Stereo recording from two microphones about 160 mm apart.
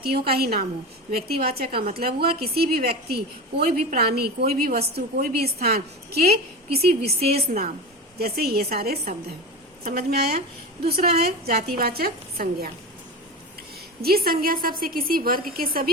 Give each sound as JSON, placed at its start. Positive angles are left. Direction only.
{"t": 0.0, "sound": "a woman's voice", "side_deg": -75}
{"t": 10.1, "sound": "a woman's voice", "side_deg": -70}
{"t": 14.0, "sound": "a woman's voice", "side_deg": -70}